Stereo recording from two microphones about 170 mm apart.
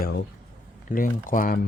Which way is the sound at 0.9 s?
55° left (ahead or behind).